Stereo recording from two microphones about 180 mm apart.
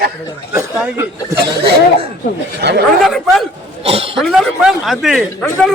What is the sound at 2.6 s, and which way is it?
Speech, 65° right (ahead or behind).